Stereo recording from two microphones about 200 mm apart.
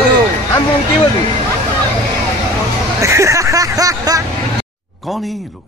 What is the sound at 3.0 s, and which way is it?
Speech, 15° right (ahead or behind).